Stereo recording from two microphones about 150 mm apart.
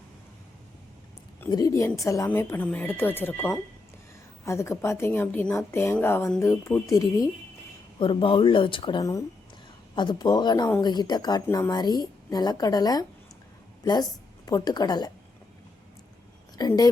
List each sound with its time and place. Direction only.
1.5 s a woman's voice: 25° left (ahead or behind)
7.9 s a woman's voice: 35° left (ahead or behind)
11.4 s speech: 15° left (ahead or behind)
11.7 s a woman's voice: 25° left (ahead or behind)
16.6 s a woman's voice: 25° left (ahead or behind)